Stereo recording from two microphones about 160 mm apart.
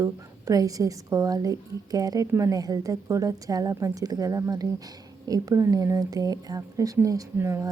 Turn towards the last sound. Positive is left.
turn(degrees=-15)  # may be behind; listen again after turning